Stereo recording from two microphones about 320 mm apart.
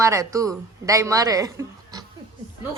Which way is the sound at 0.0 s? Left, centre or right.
Centre.